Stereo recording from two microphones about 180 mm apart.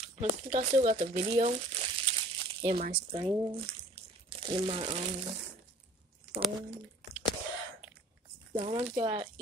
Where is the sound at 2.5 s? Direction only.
30° right (ahead or behind).